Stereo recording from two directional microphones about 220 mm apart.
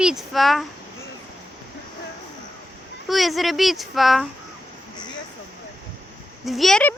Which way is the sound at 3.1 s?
Centre (ahead or behind).